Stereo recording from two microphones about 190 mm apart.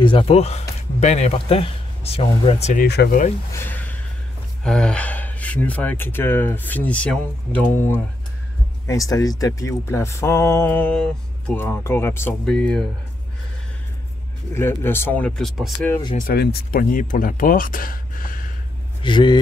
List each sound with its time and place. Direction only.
0.0 s speech: 25° left (ahead or behind)
2.8 s speech: 55° left (ahead or behind)
3.5 s gasp: 10° left (ahead or behind)
4.6 s speech: 5° left (ahead or behind)
14.5 s speech: 10° left (ahead or behind)
16.2 s speech: 50° left (ahead or behind)
19.0 s speech: 25° left (ahead or behind)